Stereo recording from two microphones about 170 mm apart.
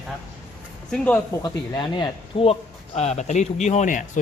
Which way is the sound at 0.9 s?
5° left (ahead or behind).